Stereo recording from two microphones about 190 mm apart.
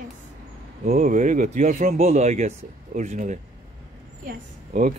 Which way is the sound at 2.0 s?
35° right (ahead or behind).